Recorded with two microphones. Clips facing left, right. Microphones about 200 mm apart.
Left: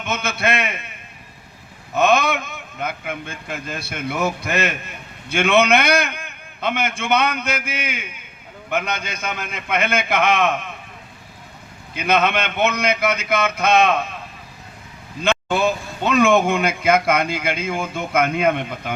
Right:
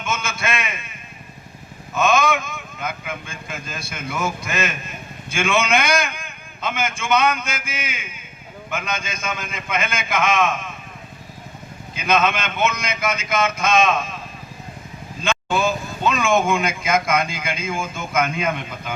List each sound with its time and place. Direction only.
0.0 s a man's voice: 60° left (ahead or behind)
2.0 s a man's voice: 60° left (ahead or behind)
11.9 s a man's voice: 60° left (ahead or behind)
15.2 s a man's voice: 65° left (ahead or behind)